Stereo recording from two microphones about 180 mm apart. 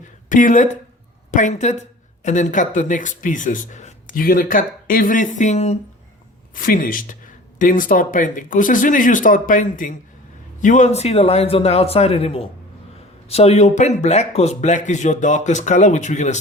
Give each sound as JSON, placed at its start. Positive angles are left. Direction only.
{"t": 0.3, "sound": "speech", "side_deg": 45}
{"t": 6.5, "sound": "speech", "side_deg": 50}